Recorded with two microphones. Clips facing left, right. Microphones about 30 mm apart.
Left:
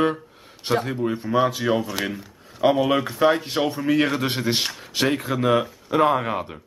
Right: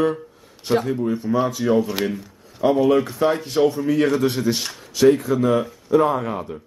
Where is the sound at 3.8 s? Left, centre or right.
Left.